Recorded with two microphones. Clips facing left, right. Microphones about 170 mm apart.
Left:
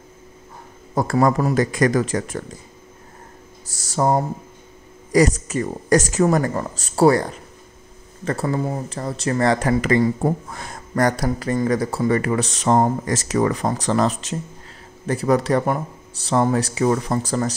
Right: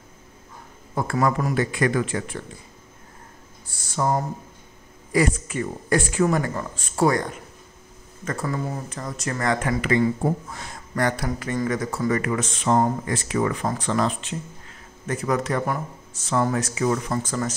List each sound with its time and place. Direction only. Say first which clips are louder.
0.9 s speech: left 5 dB; 35° left (ahead or behind)
3.7 s speech: left 5 dB; 40° left (ahead or behind)